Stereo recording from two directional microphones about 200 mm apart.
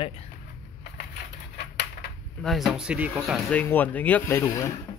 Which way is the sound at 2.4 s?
Centre (ahead or behind).